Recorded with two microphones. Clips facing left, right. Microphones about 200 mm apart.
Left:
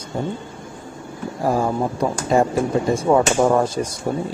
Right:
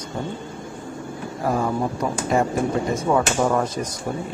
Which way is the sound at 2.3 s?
30° left (ahead or behind).